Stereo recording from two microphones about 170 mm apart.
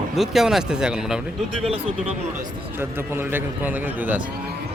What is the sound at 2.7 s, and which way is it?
A man's voice, 15° right (ahead or behind).